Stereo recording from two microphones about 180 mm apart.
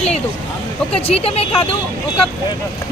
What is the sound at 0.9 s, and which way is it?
Speech, 35° left (ahead or behind).